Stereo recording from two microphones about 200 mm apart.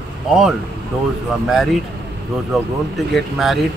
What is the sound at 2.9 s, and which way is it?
Speech, centre (ahead or behind).